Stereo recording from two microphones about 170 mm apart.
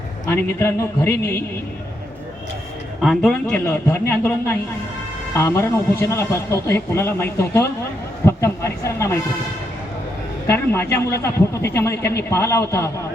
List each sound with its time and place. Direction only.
0.3 s a man's voice: 15° left (ahead or behind)
3.0 s a man's voice: centre (ahead or behind)
10.4 s a man's voice: 15° left (ahead or behind)